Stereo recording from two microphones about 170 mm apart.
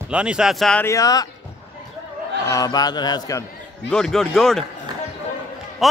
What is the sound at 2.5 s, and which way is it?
Speech, 20° left (ahead or behind).